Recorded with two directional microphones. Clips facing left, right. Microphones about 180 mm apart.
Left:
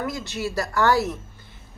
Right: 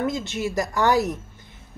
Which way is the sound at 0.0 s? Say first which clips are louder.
Right 3 dB; 20° right (ahead or behind).